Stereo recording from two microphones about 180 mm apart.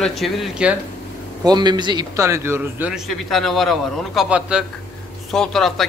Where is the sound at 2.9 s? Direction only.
Centre (ahead or behind).